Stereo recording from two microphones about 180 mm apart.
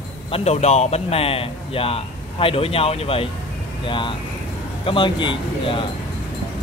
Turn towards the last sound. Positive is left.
turn(degrees=30)  # may be behind; listen again after turning